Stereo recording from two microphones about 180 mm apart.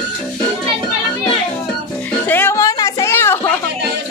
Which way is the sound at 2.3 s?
10° left (ahead or behind).